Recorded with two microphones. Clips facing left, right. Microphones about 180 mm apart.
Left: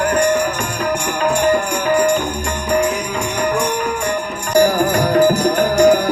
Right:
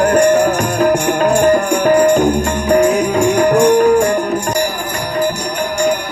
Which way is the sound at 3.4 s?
45° right (ahead or behind).